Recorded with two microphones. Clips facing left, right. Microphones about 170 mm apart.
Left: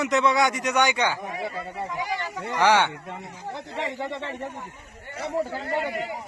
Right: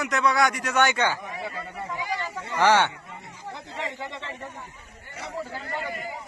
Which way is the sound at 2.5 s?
15° left (ahead or behind).